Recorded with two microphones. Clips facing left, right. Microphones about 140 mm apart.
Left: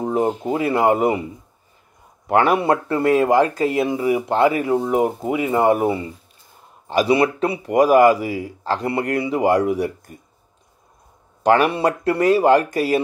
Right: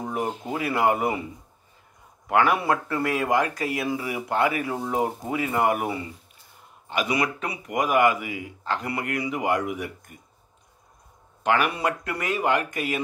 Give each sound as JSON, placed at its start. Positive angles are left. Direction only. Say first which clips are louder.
{"t": 0.0, "sound": "a sound", "louder": "left 9 dB", "side_deg": 30}
{"t": 0.5, "sound": "speech", "louder": "left 4 dB", "side_deg": 25}
{"t": 2.2, "sound": "speech", "louder": "left 5 dB", "side_deg": 30}
{"t": 11.4, "sound": "speech", "louder": "left 7 dB", "side_deg": 35}